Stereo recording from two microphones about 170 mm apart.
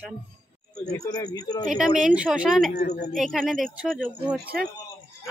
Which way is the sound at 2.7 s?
65° left (ahead or behind).